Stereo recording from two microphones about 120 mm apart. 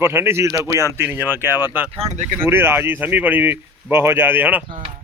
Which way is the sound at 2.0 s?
70° right (ahead or behind).